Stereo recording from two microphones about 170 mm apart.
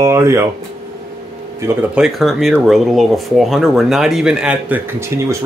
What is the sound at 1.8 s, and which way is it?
Speech, 5° right (ahead or behind).